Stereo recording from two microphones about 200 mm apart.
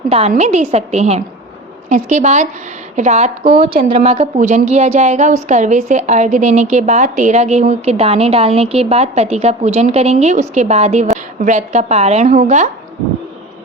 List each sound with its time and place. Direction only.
0.1 s a woman's voice: 35° right (ahead or behind)